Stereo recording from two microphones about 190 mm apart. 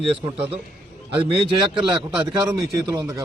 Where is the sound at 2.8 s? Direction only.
15° right (ahead or behind).